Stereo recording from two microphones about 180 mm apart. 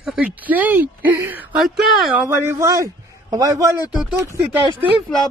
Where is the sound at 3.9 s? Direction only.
5° right (ahead or behind).